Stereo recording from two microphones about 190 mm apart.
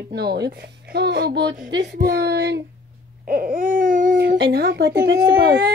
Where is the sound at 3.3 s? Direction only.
50° right (ahead or behind).